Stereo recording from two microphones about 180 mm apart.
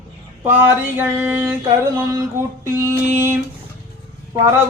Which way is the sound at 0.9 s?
10° right (ahead or behind).